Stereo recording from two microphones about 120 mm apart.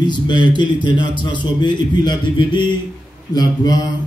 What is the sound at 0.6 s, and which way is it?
A man's voice, 40° left (ahead or behind).